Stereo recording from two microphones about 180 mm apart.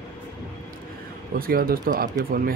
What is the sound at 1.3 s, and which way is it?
Speech, 55° right (ahead or behind).